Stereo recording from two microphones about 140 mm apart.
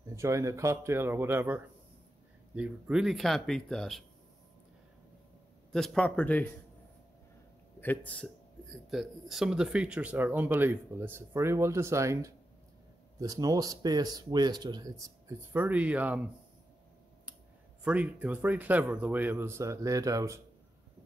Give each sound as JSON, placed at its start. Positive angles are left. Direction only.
{"t": 0.1, "sound": "speech", "side_deg": -20}
{"t": 5.7, "sound": "a man's voice", "side_deg": 5}
{"t": 7.8, "sound": "speech", "side_deg": 10}
{"t": 15.5, "sound": "speech", "side_deg": -10}
{"t": 17.8, "sound": "speech", "side_deg": -10}